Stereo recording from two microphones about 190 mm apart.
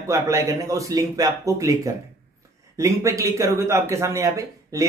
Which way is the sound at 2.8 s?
15° right (ahead or behind).